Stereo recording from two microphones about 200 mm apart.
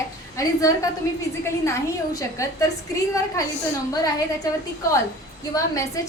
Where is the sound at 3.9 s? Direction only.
20° left (ahead or behind).